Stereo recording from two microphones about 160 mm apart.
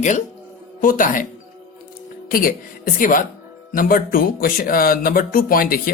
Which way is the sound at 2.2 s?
65° left (ahead or behind).